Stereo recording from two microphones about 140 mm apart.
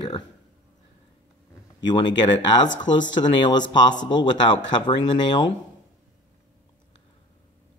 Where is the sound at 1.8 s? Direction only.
30° left (ahead or behind).